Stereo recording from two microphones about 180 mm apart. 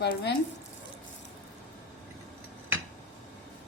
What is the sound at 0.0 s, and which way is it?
Speech, 65° left (ahead or behind).